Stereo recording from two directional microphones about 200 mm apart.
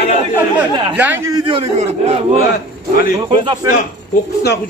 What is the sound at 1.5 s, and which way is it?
Speech, 30° right (ahead or behind).